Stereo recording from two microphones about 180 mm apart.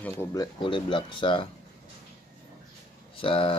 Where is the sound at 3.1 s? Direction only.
30° left (ahead or behind).